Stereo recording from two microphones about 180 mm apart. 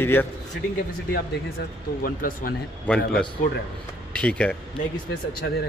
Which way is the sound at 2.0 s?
50° left (ahead or behind).